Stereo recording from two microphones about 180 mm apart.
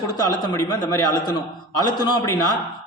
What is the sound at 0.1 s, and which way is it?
A man's voice, 20° left (ahead or behind).